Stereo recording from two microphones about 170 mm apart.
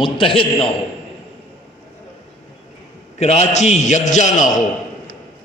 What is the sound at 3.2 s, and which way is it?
A man's voice, 40° left (ahead or behind).